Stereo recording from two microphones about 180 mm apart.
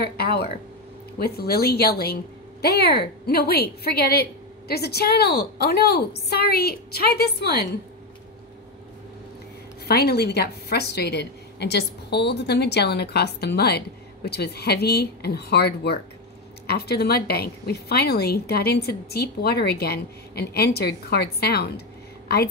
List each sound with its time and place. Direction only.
0.0 s a woman's voice: 60° left (ahead or behind)
9.8 s a woman's voice: 60° left (ahead or behind)